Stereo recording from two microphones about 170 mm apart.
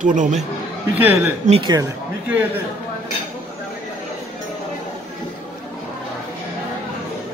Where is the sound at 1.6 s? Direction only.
25° right (ahead or behind).